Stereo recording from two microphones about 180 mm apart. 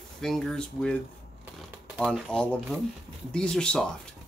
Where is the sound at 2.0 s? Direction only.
5° left (ahead or behind).